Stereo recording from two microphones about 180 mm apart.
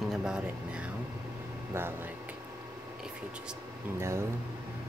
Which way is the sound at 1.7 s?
15° right (ahead or behind).